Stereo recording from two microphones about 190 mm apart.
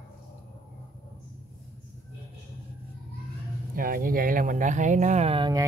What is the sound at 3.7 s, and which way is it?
Speech, 50° right (ahead or behind).